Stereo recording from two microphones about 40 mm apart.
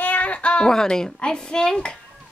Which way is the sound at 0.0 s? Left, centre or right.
Left.